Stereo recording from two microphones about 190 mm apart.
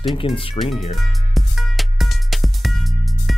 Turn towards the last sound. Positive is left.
turn(degrees=0)  # may be behind; listen again after turning